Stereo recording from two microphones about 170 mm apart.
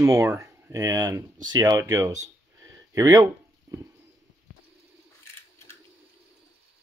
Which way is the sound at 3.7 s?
20° right (ahead or behind).